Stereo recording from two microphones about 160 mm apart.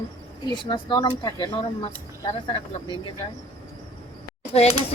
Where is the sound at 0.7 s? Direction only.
30° left (ahead or behind).